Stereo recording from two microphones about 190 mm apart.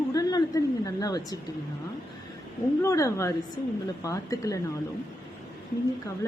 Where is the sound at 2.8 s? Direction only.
15° left (ahead or behind).